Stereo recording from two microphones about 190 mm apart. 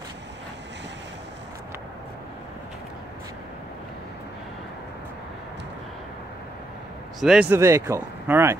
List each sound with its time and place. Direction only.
7.2 s speech: 5° right (ahead or behind)